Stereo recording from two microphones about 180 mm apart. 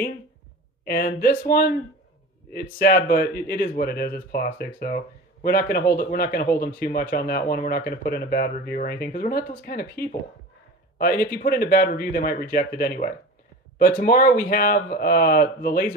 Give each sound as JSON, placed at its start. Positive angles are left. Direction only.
{"t": 0.8, "sound": "speech", "side_deg": 55}